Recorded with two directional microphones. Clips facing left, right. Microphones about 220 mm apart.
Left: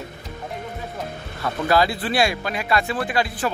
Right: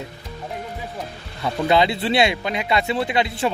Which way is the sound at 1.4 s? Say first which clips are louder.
Right 1 dB; 20° right (ahead or behind).